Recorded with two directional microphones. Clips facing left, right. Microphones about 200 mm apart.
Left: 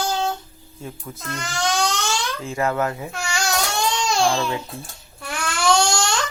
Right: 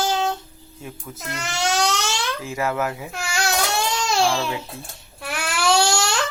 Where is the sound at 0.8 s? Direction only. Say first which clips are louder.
Left 2 dB; centre (ahead or behind).